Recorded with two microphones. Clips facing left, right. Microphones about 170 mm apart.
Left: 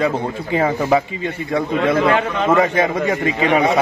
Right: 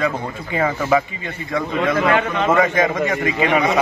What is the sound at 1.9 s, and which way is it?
A man's voice, 30° left (ahead or behind).